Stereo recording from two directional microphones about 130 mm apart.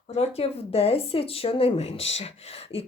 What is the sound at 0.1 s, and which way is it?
Speech, 55° left (ahead or behind).